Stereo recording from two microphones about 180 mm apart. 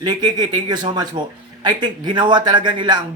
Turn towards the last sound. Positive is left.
turn(degrees=-25)  # may be behind; listen again after turning